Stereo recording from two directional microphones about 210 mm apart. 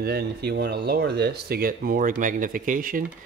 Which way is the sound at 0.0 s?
50° right (ahead or behind).